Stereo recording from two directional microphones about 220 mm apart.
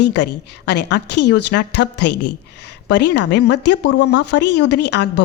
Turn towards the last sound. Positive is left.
turn(degrees=50)  # may be behind; listen again after turning